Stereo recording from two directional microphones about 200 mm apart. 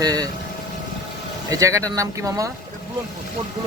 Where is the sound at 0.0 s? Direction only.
20° right (ahead or behind).